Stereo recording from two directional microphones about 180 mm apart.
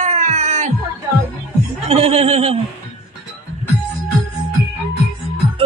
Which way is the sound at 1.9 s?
35° right (ahead or behind).